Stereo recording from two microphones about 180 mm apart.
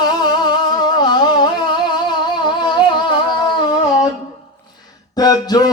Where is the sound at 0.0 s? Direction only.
25° left (ahead or behind).